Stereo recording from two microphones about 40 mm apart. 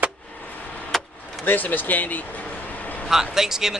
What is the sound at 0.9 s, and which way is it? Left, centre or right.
Vehicle, centre.